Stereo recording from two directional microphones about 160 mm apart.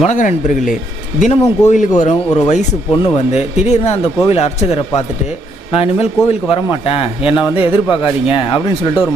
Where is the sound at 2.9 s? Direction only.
30° left (ahead or behind).